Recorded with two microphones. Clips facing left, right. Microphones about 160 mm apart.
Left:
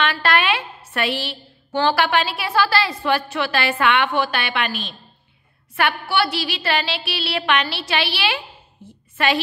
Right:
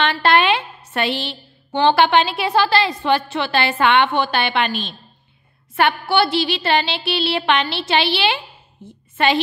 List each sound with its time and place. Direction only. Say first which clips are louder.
0.0 s a woman's voice: right 4 dB; 25° right (ahead or behind)
5.8 s a sound: right 4 dB; 25° right (ahead or behind)
8.8 s a woman's voice: right 3 dB; 25° right (ahead or behind)